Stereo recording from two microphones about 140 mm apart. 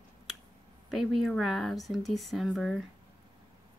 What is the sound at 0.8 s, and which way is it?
Speech, centre (ahead or behind).